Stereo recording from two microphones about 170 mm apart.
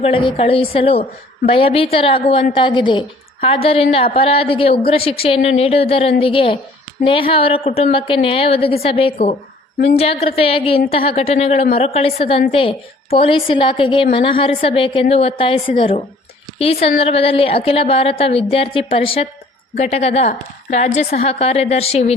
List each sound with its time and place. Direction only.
0.0 s a woman's voice: 30° left (ahead or behind)